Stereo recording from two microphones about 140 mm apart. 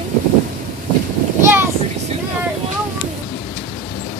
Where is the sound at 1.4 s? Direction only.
15° right (ahead or behind).